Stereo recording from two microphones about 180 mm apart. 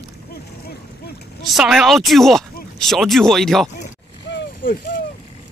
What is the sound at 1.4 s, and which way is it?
Speech, 5° right (ahead or behind).